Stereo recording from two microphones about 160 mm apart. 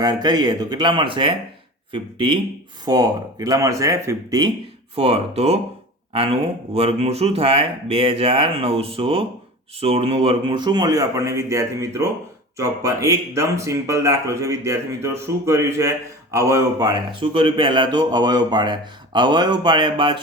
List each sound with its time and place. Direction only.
0.0 s speech: 25° right (ahead or behind)
4.9 s speech: 40° right (ahead or behind)